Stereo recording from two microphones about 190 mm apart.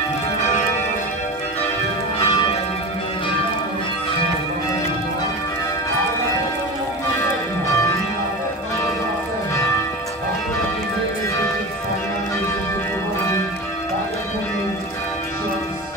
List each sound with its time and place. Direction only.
2.1 s church bell: 30° left (ahead or behind)